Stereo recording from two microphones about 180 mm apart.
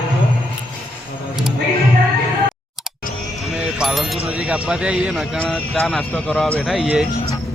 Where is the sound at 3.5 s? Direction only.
5° right (ahead or behind).